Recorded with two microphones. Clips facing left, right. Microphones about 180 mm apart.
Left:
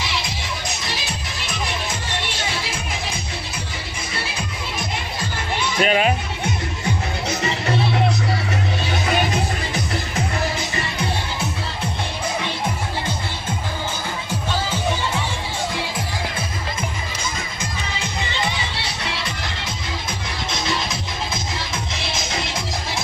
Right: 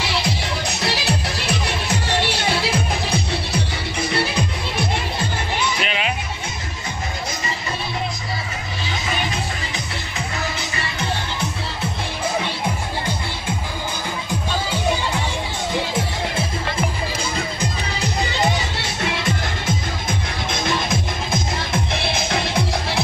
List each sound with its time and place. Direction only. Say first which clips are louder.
2.7 s music: right 6 dB; 70° right (ahead or behind)
5.8 s music: left 6 dB; 45° left (ahead or behind)
7.2 s music: left 5 dB; 70° left (ahead or behind)
17.6 s music: right 3 dB; 35° right (ahead or behind); by 23.0 s 60° right (ahead or behind)